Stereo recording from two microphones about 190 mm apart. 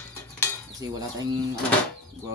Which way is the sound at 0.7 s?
20° right (ahead or behind).